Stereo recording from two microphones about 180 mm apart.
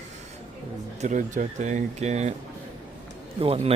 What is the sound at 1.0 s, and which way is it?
Speech, 45° right (ahead or behind).